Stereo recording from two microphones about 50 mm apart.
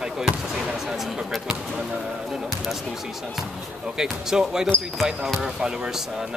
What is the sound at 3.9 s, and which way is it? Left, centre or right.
Speech, centre.